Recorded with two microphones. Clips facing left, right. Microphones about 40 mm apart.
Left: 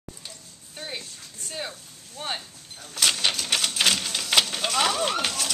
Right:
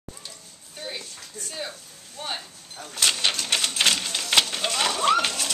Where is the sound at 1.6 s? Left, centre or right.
Centre.